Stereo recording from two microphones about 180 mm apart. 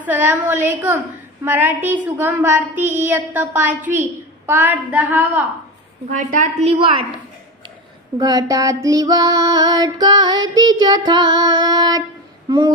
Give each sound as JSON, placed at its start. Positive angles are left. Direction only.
{"t": 0.0, "sound": "speech", "side_deg": -10}
{"t": 6.1, "sound": "a woman's voice", "side_deg": -45}
{"t": 8.2, "sound": "female singing", "side_deg": -20}
{"t": 12.4, "sound": "humming", "side_deg": -25}